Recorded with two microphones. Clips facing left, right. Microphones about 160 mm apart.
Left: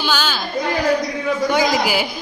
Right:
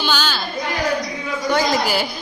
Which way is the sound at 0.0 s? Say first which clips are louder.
Left 1 dB; 5° left (ahead or behind).